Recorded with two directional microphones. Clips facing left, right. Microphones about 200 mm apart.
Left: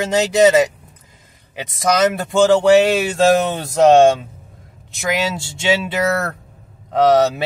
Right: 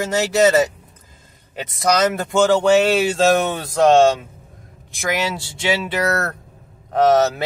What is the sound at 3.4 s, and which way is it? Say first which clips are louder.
Speech: left 1 dB; 25° left (ahead or behind).